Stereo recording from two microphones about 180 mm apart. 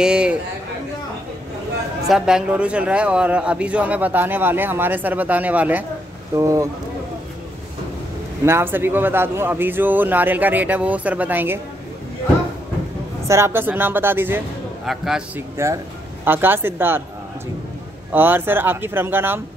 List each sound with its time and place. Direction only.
0.0 s speech: 5° right (ahead or behind)
2.0 s a man's voice: 5° right (ahead or behind)
8.5 s a man's voice: 15° right (ahead or behind)
13.3 s a man's voice: 15° right (ahead or behind)
15.5 s a man's voice: 15° right (ahead or behind)
18.1 s a man's voice: 10° right (ahead or behind)